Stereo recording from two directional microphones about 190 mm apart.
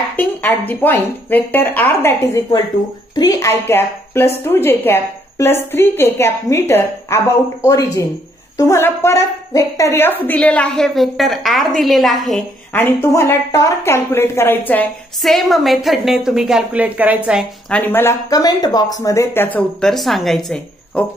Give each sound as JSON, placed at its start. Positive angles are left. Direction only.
{"t": 0.1, "sound": "speech", "side_deg": 10}
{"t": 12.7, "sound": "speech", "side_deg": 15}
{"t": 17.6, "sound": "speech", "side_deg": 10}